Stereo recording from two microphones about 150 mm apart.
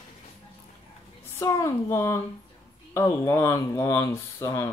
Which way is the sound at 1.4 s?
20° left (ahead or behind).